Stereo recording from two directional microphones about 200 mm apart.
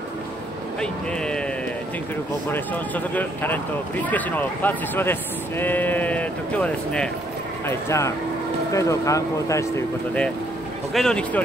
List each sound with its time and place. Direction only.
0.7 s speech: 5° left (ahead or behind)
2.5 s speech: 10° left (ahead or behind)